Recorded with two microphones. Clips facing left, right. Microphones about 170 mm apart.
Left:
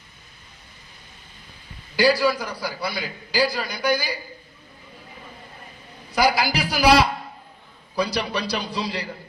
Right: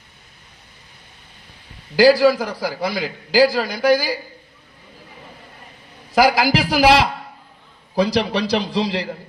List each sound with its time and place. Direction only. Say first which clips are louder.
2.0 s a man's voice: right 7 dB; 90° right
6.1 s a man's voice: right 5 dB; 90° right